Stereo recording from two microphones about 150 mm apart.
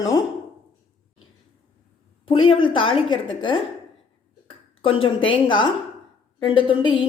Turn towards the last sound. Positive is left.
turn(degrees=35)  # may be behind; listen again after turning